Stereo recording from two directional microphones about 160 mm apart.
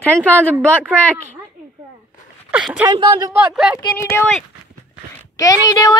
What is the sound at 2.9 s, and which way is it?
Speech, 30° right (ahead or behind).